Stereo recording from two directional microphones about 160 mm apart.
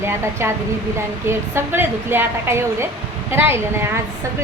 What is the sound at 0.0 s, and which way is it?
Speech, 15° right (ahead or behind).